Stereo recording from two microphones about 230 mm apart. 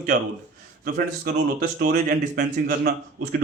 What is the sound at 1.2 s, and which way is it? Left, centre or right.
Speech, right.